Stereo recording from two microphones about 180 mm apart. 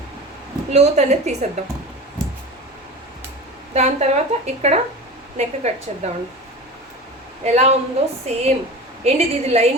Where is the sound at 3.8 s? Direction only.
40° right (ahead or behind).